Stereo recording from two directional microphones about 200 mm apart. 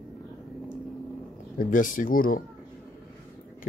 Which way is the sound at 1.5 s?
40° left (ahead or behind).